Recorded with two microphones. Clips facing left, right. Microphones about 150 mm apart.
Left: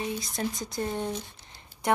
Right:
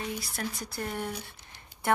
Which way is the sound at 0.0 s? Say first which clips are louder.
Left 4 dB; 20° left (ahead or behind).